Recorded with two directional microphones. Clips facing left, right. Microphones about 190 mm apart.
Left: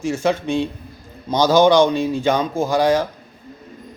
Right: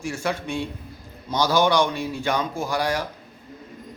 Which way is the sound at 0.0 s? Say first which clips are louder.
Left 7 dB; 20° left (ahead or behind).